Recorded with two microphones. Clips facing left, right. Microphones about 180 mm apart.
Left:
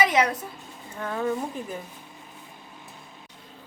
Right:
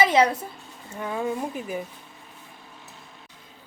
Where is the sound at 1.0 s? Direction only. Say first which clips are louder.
Even; 10° right (ahead or behind).